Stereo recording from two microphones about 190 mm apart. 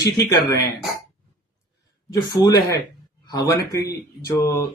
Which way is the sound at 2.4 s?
20° left (ahead or behind).